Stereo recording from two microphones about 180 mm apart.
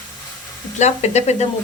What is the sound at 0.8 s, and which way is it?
Speech, 40° left (ahead or behind).